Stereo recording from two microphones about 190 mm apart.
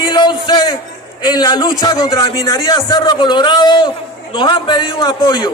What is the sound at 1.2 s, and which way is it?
A man's voice, 20° left (ahead or behind).